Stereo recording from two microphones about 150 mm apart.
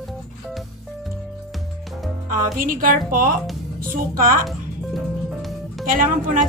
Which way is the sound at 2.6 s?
70° right (ahead or behind).